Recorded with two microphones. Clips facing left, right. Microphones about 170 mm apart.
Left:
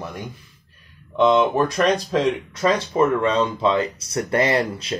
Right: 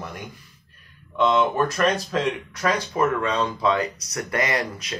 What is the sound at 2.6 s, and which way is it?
Speech, 25° left (ahead or behind).